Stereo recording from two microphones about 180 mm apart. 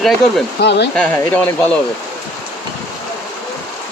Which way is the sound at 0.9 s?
10° left (ahead or behind).